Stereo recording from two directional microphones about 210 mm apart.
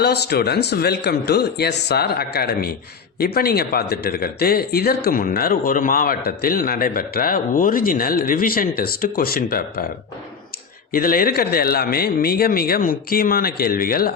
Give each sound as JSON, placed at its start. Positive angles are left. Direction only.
{"t": 0.0, "sound": "speech", "side_deg": 50}
{"t": 10.9, "sound": "speech", "side_deg": 45}